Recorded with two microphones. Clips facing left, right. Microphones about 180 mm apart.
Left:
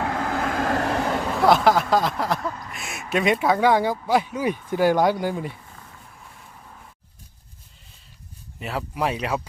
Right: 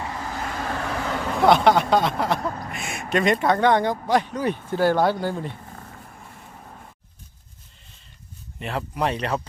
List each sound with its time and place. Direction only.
0.0 s vehicle: 70° left (ahead or behind); by 1.1 s 45° left (ahead or behind)
1.3 s speech: centre (ahead or behind)
5.6 s a sound: 50° right (ahead or behind)
8.5 s speech: 5° left (ahead or behind)